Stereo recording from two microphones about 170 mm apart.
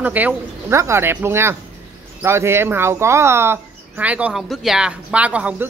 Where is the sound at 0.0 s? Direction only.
10° right (ahead or behind).